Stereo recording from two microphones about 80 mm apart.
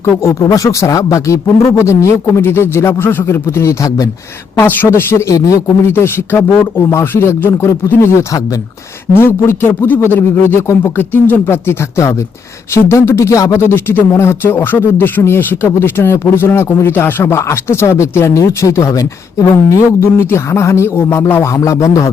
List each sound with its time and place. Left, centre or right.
0.0 s speech: left
4.6 s a man's voice: left
5.9 s a man's voice: left
9.1 s a man's voice: left
13.6 s a man's voice: left
21.4 s speech: left